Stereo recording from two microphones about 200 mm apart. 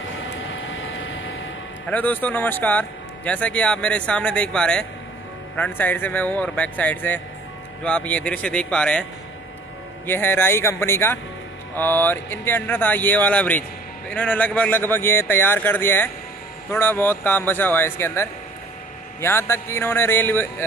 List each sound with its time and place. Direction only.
0.5 s vehicle: 75° left (ahead or behind)
1.9 s speech: 10° left (ahead or behind)
10.0 s speech: 10° left (ahead or behind)